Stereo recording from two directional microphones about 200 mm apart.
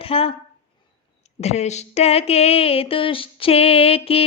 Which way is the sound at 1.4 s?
35° left (ahead or behind).